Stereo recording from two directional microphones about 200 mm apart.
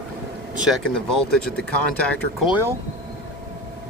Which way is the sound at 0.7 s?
5° left (ahead or behind).